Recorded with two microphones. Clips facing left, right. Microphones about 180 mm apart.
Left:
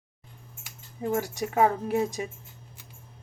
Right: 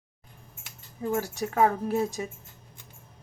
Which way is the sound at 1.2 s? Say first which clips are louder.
Even; 15° left (ahead or behind).